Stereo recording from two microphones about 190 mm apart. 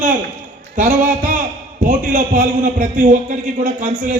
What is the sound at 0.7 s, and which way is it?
Speech, 45° right (ahead or behind).